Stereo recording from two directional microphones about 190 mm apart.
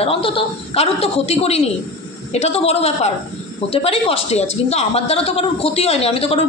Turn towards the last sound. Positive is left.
turn(degrees=30)  # may be behind; listen again after turning